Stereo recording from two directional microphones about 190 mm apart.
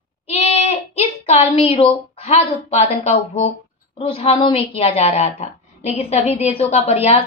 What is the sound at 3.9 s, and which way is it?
A woman's voice, 30° left (ahead or behind).